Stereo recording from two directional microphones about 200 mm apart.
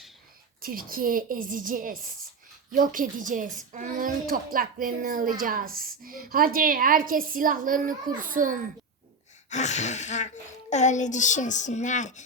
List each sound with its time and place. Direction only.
0.6 s a child's voice: 45° right (ahead or behind)
9.5 s a child's voice: 35° left (ahead or behind)